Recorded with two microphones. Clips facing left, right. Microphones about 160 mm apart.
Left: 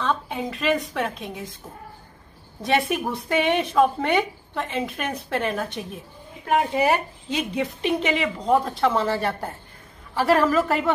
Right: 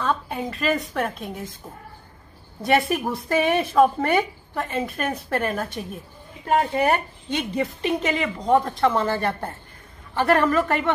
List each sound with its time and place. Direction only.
0.0 s a woman's voice: centre (ahead or behind)
2.6 s a woman's voice: centre (ahead or behind)